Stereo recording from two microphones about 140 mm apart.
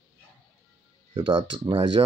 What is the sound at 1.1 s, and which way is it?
Speech, 35° right (ahead or behind).